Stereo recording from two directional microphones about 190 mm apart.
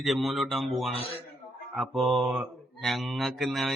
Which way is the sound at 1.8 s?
Centre (ahead or behind).